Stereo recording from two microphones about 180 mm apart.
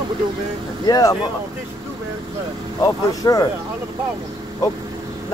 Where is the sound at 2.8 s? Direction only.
20° left (ahead or behind).